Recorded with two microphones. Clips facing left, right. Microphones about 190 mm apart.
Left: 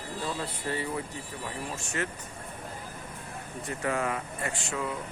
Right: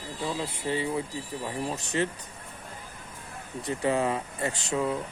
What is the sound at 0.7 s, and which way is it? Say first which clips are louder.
Speech: right 4 dB; 15° right (ahead or behind).